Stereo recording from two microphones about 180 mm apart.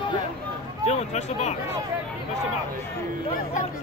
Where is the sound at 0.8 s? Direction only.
40° left (ahead or behind).